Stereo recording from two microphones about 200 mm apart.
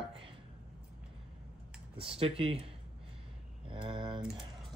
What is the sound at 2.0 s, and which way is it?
Speech, 30° right (ahead or behind).